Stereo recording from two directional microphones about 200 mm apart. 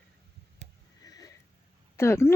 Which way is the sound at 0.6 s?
35° right (ahead or behind).